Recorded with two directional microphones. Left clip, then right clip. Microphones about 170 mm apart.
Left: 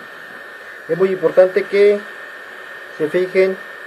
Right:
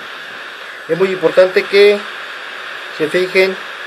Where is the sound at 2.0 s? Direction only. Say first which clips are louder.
Right 6 dB; 20° right (ahead or behind).